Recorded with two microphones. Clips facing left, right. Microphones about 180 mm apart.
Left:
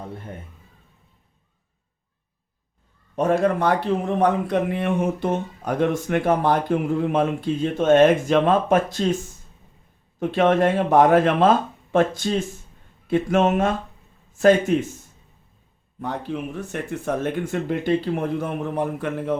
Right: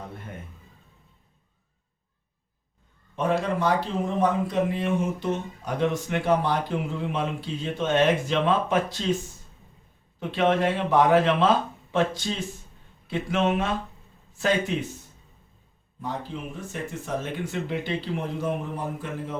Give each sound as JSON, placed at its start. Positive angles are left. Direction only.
{"t": 3.2, "sound": "a man's voice", "side_deg": 45}
{"t": 10.2, "sound": "a man's voice", "side_deg": 50}
{"t": 16.0, "sound": "speech", "side_deg": 65}